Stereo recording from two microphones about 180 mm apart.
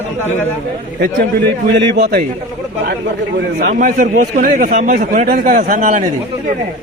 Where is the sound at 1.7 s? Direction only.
70° right (ahead or behind).